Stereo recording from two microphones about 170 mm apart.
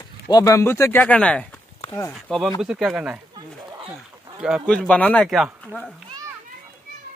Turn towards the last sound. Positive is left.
turn(degrees=-5)  # may be behind; listen again after turning